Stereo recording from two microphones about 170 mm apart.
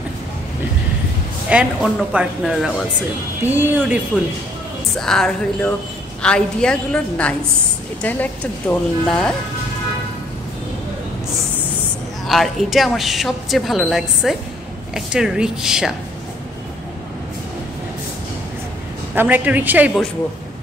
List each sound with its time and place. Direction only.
1.5 s a woman's voice: 5° right (ahead or behind)
4.9 s a woman's voice: 5° left (ahead or behind)
12.3 s a woman's voice: centre (ahead or behind)
19.1 s a woman's voice: 10° right (ahead or behind)